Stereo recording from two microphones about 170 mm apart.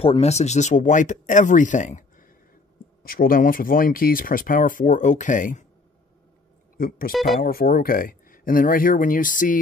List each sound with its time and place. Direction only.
0.0 s speech: 35° left (ahead or behind)
7.1 s speech: centre (ahead or behind)
7.4 s speech: 60° left (ahead or behind)